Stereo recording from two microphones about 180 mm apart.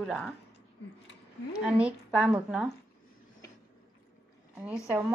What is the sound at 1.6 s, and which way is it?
Speech, 5° right (ahead or behind).